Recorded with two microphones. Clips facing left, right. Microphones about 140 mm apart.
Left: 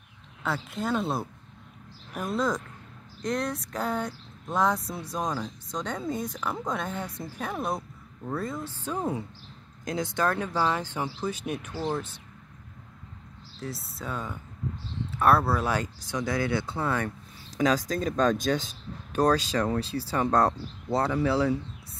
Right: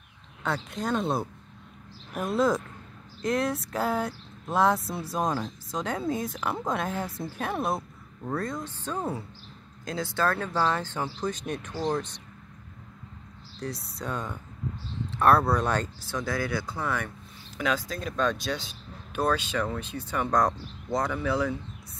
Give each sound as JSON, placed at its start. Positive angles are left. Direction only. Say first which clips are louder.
{"t": 0.4, "sound": "speech", "louder": "even", "side_deg": 5}
{"t": 13.6, "sound": "speech", "louder": "right 2 dB", "side_deg": 5}